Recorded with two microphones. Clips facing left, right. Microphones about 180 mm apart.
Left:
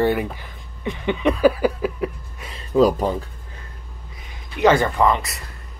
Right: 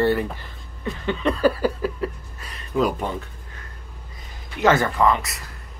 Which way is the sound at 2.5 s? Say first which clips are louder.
Left 6 dB; 35° left (ahead or behind).